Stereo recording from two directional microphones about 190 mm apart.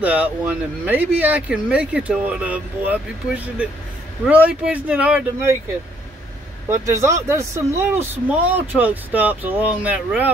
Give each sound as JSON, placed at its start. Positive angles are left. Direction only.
{"t": 0.0, "sound": "speech", "side_deg": -5}
{"t": 6.7, "sound": "speech", "side_deg": -15}